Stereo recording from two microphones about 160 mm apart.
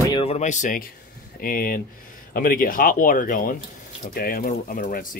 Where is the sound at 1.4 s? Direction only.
65° left (ahead or behind).